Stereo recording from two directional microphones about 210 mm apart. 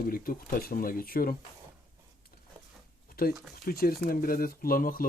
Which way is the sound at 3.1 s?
45° left (ahead or behind).